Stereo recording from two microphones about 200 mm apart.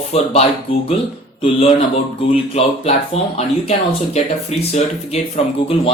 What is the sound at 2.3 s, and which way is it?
Speech, 30° left (ahead or behind).